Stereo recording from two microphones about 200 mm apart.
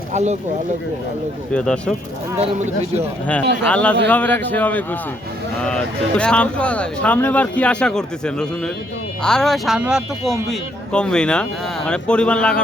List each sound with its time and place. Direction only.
0.1 s speech: 35° right (ahead or behind)
1.5 s speech: 5° left (ahead or behind)
2.4 s speech: 35° right (ahead or behind)
3.7 s a man's voice: 5° left (ahead or behind)